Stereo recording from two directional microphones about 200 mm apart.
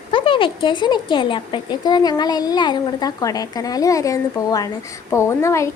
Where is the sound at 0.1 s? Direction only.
25° left (ahead or behind).